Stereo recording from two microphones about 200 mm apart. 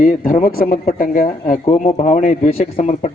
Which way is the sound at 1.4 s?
35° left (ahead or behind).